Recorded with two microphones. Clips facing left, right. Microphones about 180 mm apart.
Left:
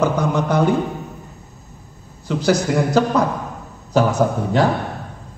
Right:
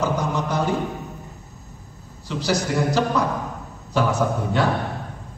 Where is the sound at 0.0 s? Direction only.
55° left (ahead or behind).